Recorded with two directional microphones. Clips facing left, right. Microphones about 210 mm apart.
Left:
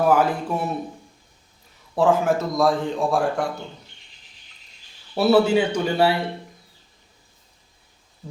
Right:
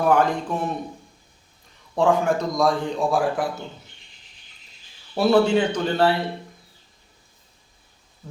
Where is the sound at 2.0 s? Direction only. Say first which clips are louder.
Left 1 dB; 5° left (ahead or behind).